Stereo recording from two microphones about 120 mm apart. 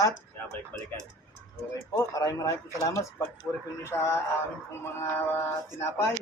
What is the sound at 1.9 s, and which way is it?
Speech, 30° left (ahead or behind).